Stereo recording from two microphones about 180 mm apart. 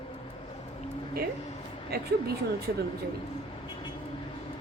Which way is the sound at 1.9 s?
60° right (ahead or behind).